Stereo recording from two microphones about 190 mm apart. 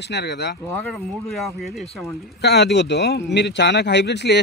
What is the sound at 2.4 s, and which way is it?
A man's voice, 60° left (ahead or behind).